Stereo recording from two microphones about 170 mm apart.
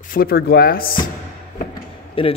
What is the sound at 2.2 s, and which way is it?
Speech, 30° left (ahead or behind).